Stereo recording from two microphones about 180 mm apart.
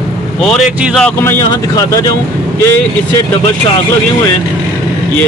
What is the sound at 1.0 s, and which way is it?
Speech, 15° left (ahead or behind).